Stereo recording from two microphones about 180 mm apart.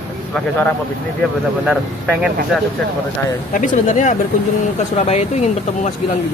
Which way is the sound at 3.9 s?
45° left (ahead or behind).